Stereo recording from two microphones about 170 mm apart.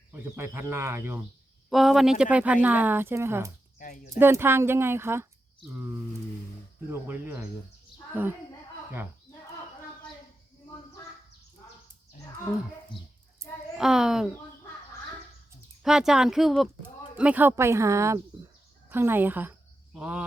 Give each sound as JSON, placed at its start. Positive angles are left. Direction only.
{"t": 0.1, "sound": "speech", "side_deg": -15}
{"t": 1.7, "sound": "speech", "side_deg": 0}
{"t": 3.8, "sound": "speech", "side_deg": 50}
{"t": 4.2, "sound": "speech", "side_deg": -15}
{"t": 7.1, "sound": "speech", "side_deg": -15}
{"t": 13.7, "sound": "speech", "side_deg": -5}
{"t": 15.8, "sound": "a woman's voice", "side_deg": -5}